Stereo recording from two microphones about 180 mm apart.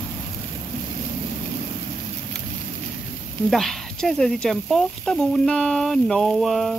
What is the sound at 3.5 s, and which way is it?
Speech, centre (ahead or behind).